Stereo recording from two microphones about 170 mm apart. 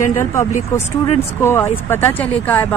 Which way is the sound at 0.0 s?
15° left (ahead or behind).